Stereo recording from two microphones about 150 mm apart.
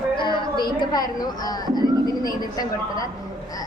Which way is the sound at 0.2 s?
30° left (ahead or behind).